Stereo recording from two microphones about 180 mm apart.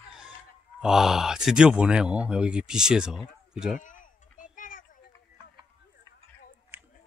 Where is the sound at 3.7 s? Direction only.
45° left (ahead or behind).